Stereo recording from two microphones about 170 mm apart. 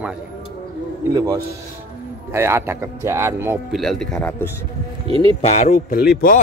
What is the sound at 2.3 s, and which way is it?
Speech, 15° right (ahead or behind).